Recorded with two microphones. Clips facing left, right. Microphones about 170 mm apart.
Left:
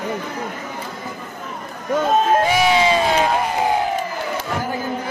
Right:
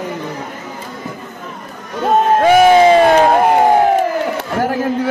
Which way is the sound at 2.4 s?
50° right (ahead or behind).